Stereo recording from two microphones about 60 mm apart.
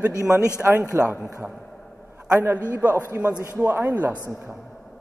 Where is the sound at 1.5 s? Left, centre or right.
Centre.